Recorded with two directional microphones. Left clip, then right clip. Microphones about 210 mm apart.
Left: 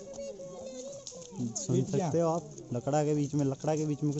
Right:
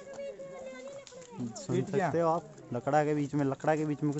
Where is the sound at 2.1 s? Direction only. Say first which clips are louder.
Right 1 dB; 10° right (ahead or behind).